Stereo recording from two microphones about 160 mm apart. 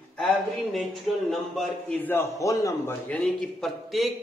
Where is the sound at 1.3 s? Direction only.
Centre (ahead or behind); by 2.9 s 20° left (ahead or behind).